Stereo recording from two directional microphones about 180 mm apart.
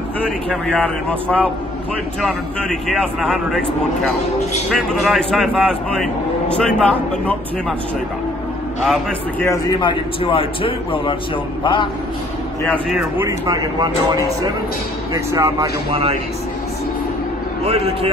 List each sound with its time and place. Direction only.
0.2 s speech: 5° left (ahead or behind)
4.7 s a man's voice: centre (ahead or behind)
9.4 s a man's voice: 20° left (ahead or behind)
12.7 s a man's voice: 15° right (ahead or behind)
15.9 s a man's voice: 30° right (ahead or behind)
17.6 s a man's voice: 35° right (ahead or behind)